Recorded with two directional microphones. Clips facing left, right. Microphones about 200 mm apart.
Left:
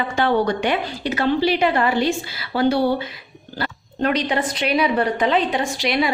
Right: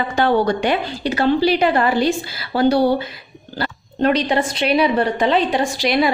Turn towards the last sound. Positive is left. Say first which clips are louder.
# right 3 dB
turn(degrees=-40)  # may be behind; listen again after turning